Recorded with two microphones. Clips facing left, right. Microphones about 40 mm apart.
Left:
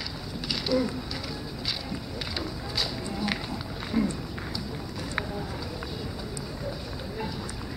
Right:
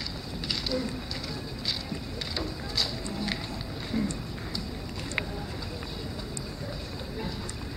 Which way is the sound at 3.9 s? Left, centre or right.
Centre.